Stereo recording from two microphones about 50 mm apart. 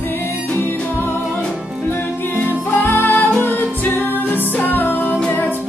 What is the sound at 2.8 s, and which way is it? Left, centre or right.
Music, left.